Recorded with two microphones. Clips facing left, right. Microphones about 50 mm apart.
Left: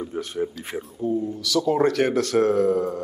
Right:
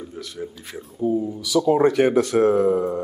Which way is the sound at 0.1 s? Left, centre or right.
Left.